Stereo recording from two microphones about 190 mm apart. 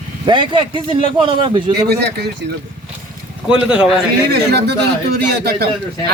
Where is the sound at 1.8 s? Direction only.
60° right (ahead or behind).